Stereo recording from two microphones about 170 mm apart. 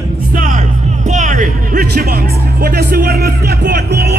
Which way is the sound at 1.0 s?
45° right (ahead or behind).